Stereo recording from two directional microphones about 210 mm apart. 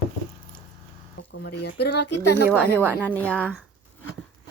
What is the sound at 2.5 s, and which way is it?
Speech, 5° left (ahead or behind).